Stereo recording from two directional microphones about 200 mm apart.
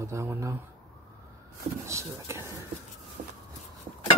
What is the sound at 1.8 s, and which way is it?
Speech, 15° right (ahead or behind).